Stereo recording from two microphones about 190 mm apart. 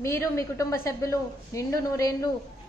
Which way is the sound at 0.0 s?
15° left (ahead or behind).